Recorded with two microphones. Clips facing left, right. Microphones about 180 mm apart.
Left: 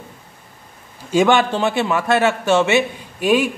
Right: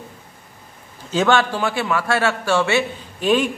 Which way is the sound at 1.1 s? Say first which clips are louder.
Left 3 dB; 15° left (ahead or behind).